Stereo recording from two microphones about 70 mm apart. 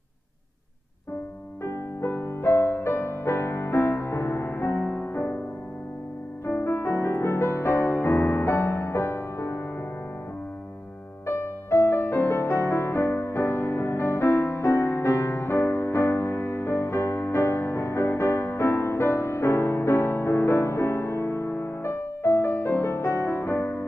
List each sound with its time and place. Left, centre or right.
1.6 s music: left
6.4 s music: left
11.2 s music: left